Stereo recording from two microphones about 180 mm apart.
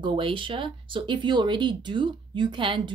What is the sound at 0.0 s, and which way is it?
Speech, 30° right (ahead or behind).